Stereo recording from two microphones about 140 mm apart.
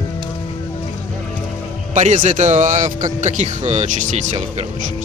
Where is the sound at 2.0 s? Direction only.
60° right (ahead or behind).